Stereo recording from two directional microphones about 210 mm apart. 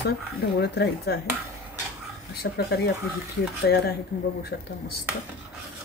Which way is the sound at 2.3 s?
50° left (ahead or behind).